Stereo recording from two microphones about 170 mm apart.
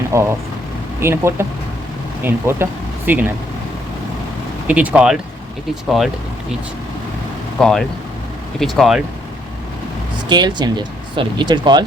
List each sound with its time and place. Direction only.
0.1 s speech: 15° right (ahead or behind)
4.7 s speech: 10° right (ahead or behind)
7.6 s speech: centre (ahead or behind)
10.2 s speech: 25° right (ahead or behind)